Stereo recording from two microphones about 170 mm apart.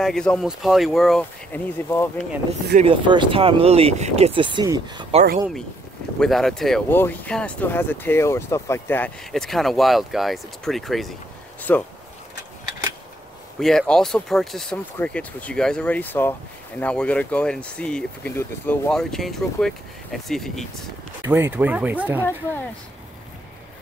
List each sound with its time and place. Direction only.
0.0 s speech: 5° left (ahead or behind)
1.5 s speech: 15° left (ahead or behind)
2.7 s speech: 35° right (ahead or behind)
6.1 s speech: centre (ahead or behind)
9.3 s speech: centre (ahead or behind)
13.6 s speech: 5° left (ahead or behind)
21.2 s speech: 15° right (ahead or behind)